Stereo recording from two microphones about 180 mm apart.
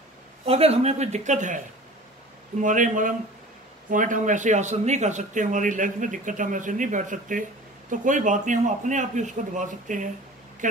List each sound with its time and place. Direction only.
0.5 s a man's voice: 35° right (ahead or behind)
2.6 s speech: 45° right (ahead or behind)